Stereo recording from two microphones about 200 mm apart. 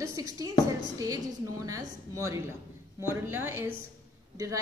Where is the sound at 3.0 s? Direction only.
10° right (ahead or behind).